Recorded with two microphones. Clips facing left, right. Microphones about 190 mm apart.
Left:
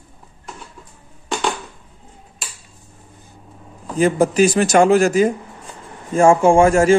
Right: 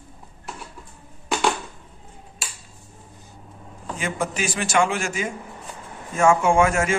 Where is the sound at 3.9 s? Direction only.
35° left (ahead or behind).